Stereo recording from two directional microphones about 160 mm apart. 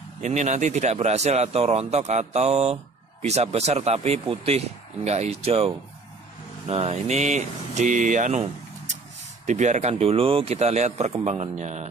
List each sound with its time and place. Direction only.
0.2 s speech: 50° right (ahead or behind)
6.7 s speech: 40° right (ahead or behind)
9.5 s speech: 45° right (ahead or behind)